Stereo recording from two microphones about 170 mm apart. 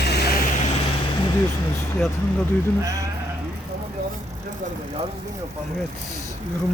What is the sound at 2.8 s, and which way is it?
Speech, 20° right (ahead or behind).